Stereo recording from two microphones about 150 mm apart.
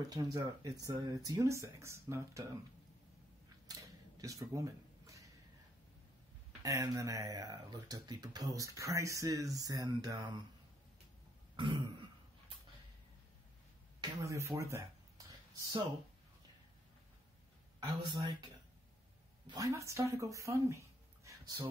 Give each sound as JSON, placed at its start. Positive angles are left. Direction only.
{"t": 0.1, "sound": "speech", "side_deg": -25}
{"t": 3.6, "sound": "a sound", "side_deg": -25}
{"t": 6.6, "sound": "speech", "side_deg": -20}
{"t": 11.5, "sound": "throat clearing", "side_deg": -35}
{"t": 14.2, "sound": "speech", "side_deg": -20}
{"t": 17.7, "sound": "speech", "side_deg": -25}
{"t": 19.4, "sound": "speech", "side_deg": -25}